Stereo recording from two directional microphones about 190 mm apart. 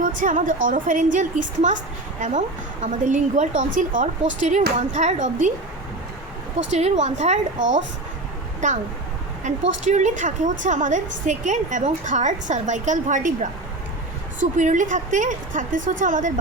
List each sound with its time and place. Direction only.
0.0 s a woman's voice: 45° right (ahead or behind)
2.8 s a woman's voice: 40° right (ahead or behind)
6.7 s a woman's voice: 35° right (ahead or behind)
8.6 s a woman's voice: 40° right (ahead or behind)